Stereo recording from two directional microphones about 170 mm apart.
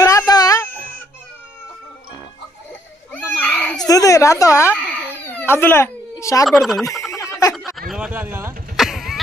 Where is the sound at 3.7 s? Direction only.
20° left (ahead or behind).